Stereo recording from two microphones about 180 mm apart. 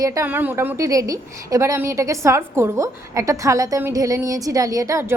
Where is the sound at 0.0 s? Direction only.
15° right (ahead or behind).